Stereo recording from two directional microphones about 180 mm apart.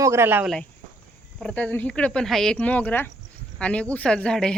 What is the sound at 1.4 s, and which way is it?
Speech, 5° left (ahead or behind).